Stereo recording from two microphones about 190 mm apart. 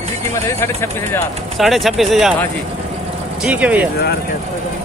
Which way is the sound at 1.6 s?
Centre (ahead or behind).